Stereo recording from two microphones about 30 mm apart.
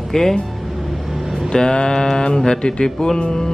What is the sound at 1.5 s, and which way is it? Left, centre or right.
Speech, left.